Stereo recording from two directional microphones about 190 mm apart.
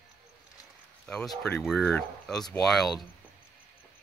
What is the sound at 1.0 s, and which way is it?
Speech, 5° left (ahead or behind).